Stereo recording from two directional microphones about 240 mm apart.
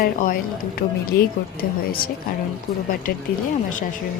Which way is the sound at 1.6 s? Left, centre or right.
Left.